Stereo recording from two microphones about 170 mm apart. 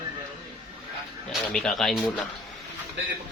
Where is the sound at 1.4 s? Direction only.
5° left (ahead or behind).